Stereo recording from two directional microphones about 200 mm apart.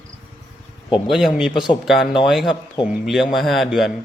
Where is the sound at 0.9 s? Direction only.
Centre (ahead or behind).